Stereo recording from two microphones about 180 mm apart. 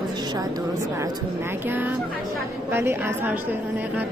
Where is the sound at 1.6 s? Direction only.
10° right (ahead or behind).